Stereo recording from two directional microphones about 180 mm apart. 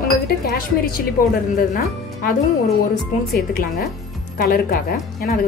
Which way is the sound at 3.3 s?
60° left (ahead or behind).